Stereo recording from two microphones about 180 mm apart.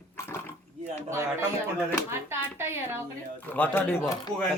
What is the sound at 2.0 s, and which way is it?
Speech, 15° right (ahead or behind).